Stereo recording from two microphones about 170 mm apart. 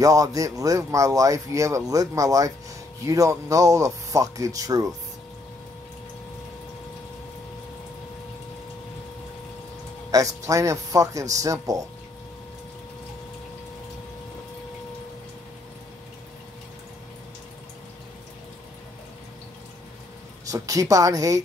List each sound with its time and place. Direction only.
0.0 s speech: 20° right (ahead or behind)
10.1 s speech: 20° right (ahead or behind)
20.4 s speech: 20° right (ahead or behind)